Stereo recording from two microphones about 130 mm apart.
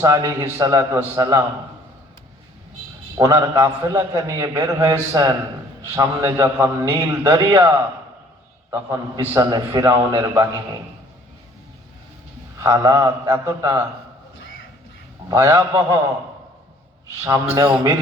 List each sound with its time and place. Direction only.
0.0 s a man's voice: 25° right (ahead or behind)
3.2 s a man's voice: 30° right (ahead or behind)
8.7 s a man's voice: 25° right (ahead or behind)
12.5 s a man's voice: 25° right (ahead or behind)
15.3 s a man's voice: 25° right (ahead or behind)
17.2 s a man's voice: 25° right (ahead or behind)